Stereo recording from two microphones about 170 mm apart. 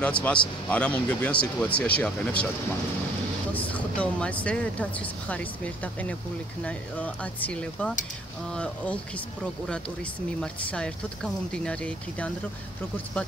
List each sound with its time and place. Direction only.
0.0 s speech: 10° left (ahead or behind)
3.5 s speech: 10° left (ahead or behind)
6.6 s speech: 10° left (ahead or behind)
10.4 s speech: 5° left (ahead or behind)